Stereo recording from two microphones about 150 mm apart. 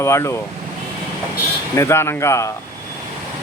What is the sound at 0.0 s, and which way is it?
Speech, 20° left (ahead or behind).